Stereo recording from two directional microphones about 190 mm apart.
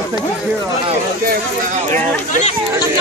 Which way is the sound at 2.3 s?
35° left (ahead or behind).